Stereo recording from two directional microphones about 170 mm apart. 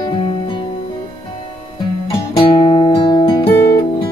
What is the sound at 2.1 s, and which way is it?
Music, 30° left (ahead or behind).